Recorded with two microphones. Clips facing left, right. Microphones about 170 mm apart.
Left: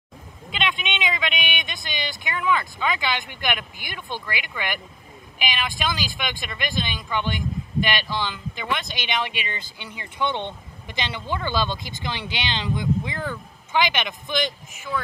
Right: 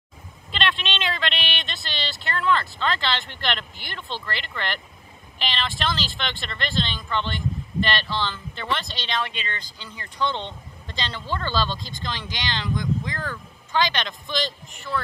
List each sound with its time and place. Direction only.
0.5 s speech: centre (ahead or behind)
1.6 s a man's voice: 15° left (ahead or behind)